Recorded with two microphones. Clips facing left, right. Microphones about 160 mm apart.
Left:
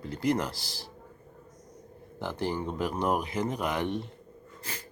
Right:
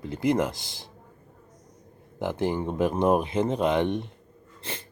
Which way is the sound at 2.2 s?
20° right (ahead or behind).